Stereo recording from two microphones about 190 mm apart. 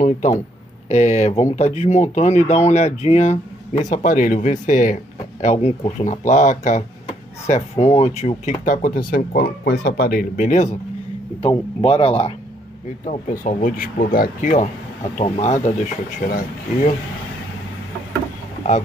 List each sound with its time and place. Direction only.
0.0 s speech: 40° left (ahead or behind)
11.4 s speech: 25° left (ahead or behind)
13.0 s speech: 45° left (ahead or behind)